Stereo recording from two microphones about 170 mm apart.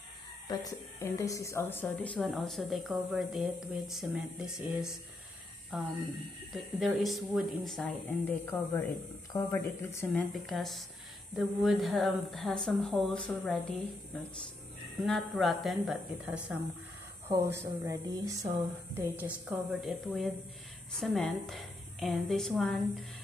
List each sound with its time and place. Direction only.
0.5 s a woman's voice: 20° left (ahead or behind)
10.3 s a woman's voice: centre (ahead or behind)
15.0 s a woman's voice: centre (ahead or behind)
17.6 s speech: 15° right (ahead or behind)
19.8 s a woman's voice: centre (ahead or behind)